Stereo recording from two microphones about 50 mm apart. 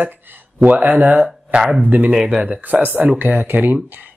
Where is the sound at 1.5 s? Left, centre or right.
Right.